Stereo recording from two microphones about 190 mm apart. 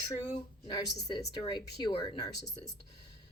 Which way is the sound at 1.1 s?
25° left (ahead or behind).